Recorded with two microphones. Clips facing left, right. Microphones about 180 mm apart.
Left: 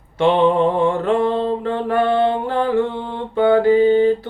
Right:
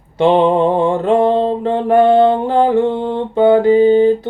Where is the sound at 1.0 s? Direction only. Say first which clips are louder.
Right 5 dB; 30° right (ahead or behind).